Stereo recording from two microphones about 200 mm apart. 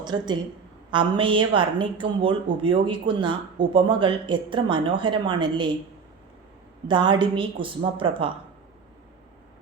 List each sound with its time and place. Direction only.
0.0 s a woman's voice: 20° right (ahead or behind)
6.8 s a woman's voice: 25° right (ahead or behind)